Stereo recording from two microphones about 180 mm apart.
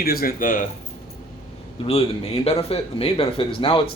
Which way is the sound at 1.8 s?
30° left (ahead or behind).